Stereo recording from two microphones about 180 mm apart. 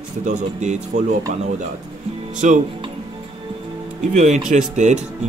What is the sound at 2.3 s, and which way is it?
Speech, 45° right (ahead or behind).